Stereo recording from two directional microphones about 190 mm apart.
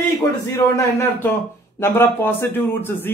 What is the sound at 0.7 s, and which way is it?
Speech, 15° left (ahead or behind).